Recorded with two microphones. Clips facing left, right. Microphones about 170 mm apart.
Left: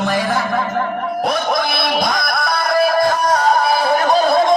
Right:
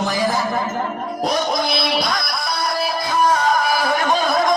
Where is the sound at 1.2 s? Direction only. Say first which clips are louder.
Left 1 dB; 60° left (ahead or behind).